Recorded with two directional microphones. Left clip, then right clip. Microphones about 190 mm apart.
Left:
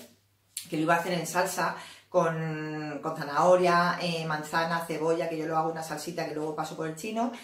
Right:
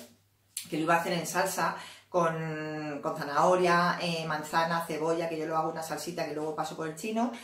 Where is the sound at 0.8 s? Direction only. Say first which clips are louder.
Left 1 dB; 15° right (ahead or behind).